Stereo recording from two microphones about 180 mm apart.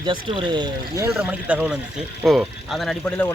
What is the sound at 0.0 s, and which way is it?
Speech, 25° right (ahead or behind).